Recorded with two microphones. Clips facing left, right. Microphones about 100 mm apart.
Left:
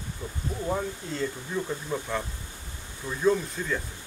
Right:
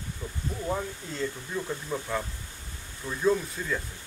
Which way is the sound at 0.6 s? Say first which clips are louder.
Left 2 dB; 5° left (ahead or behind).